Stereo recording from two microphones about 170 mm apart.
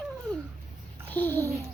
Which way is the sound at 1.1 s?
10° left (ahead or behind).